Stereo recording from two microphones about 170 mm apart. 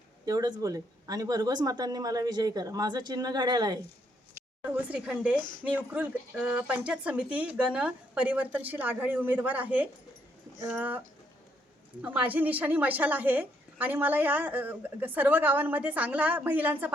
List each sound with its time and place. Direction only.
0.3 s speech: 20° right (ahead or behind)
4.6 s a woman's voice: 10° right (ahead or behind)
12.0 s a woman's voice: 10° right (ahead or behind)